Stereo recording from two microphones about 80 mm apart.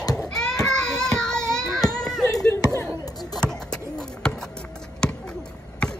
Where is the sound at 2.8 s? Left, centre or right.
Left.